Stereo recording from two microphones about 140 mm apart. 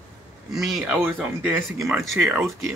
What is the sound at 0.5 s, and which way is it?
A man's voice, centre (ahead or behind).